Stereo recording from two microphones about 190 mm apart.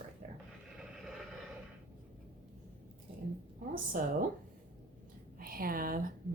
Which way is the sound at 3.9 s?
45° right (ahead or behind).